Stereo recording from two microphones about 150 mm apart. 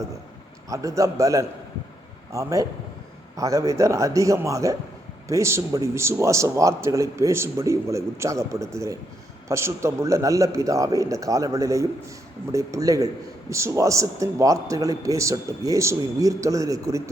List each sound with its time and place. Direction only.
0.7 s a man's voice: 20° right (ahead or behind)